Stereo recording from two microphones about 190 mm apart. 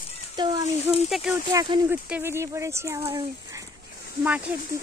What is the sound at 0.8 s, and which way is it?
Speech, 5° right (ahead or behind).